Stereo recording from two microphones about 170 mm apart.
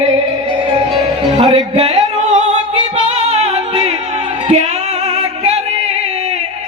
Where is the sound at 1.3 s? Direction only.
40° right (ahead or behind).